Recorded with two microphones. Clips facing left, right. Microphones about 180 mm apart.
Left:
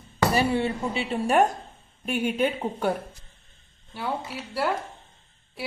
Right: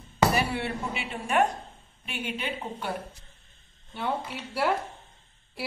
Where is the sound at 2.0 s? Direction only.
45° left (ahead or behind).